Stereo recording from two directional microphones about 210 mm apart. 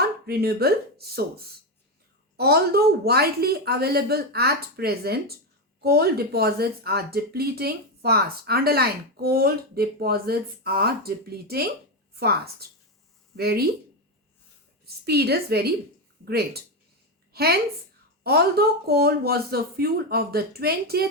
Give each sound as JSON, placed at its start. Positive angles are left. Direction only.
{"t": 0.3, "sound": "speech", "side_deg": -50}
{"t": 15.0, "sound": "a woman's voice", "side_deg": -50}